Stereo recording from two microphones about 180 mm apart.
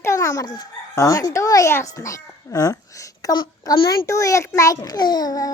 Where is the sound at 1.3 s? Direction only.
20° left (ahead or behind).